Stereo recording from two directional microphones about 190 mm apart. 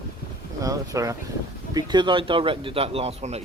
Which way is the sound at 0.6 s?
15° right (ahead or behind).